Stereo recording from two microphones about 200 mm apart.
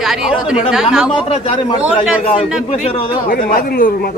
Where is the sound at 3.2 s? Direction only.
45° left (ahead or behind).